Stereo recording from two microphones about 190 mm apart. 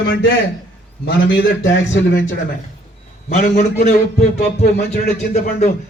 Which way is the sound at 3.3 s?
40° left (ahead or behind).